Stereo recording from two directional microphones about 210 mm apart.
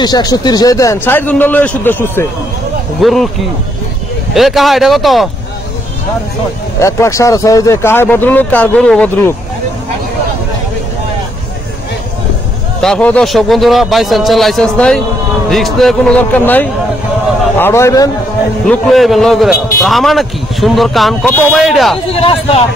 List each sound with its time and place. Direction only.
0.0 s a man's voice: 20° left (ahead or behind); by 3.3 s centre (ahead or behind)
4.3 s a man's voice: centre (ahead or behind)
6.8 s speech: 15° left (ahead or behind)
12.8 s a man's voice: 5° left (ahead or behind)
18.7 s a man's voice: centre (ahead or behind)
22.1 s speech: 25° left (ahead or behind)